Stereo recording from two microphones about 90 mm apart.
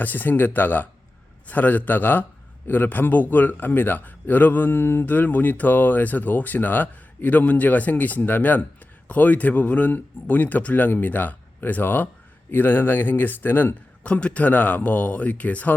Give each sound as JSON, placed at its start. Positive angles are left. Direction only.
{"t": 0.0, "sound": "a man's voice", "side_deg": 20}